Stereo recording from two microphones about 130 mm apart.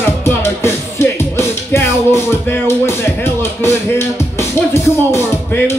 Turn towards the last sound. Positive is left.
turn(degrees=20)  # may be behind; listen again after turning